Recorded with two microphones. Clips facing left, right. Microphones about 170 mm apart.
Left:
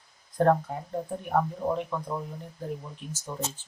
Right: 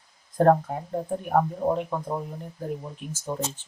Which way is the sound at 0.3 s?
45° right (ahead or behind).